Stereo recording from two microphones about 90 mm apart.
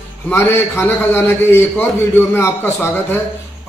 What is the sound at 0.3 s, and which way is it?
A man's voice, 30° left (ahead or behind).